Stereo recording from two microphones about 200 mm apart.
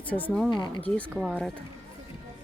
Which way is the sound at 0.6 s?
20° left (ahead or behind).